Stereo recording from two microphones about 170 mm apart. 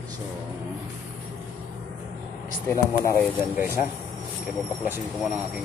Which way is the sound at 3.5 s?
15° right (ahead or behind).